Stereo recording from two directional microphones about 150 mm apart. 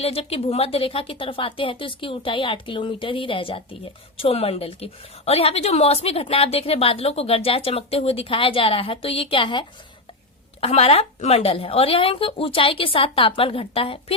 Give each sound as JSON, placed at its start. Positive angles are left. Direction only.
{"t": 0.0, "sound": "a woman's voice", "side_deg": 40}
{"t": 10.6, "sound": "a woman's voice", "side_deg": 45}